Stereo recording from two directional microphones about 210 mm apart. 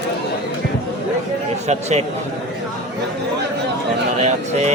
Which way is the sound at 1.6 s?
30° right (ahead or behind).